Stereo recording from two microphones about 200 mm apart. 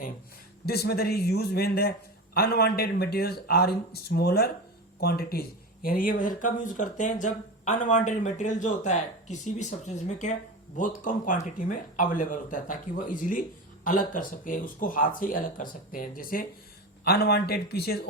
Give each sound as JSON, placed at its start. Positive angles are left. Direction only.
{"t": 0.6, "sound": "speech", "side_deg": 50}